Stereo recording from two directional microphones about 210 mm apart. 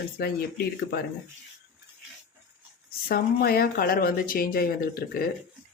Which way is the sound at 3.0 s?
45° left (ahead or behind).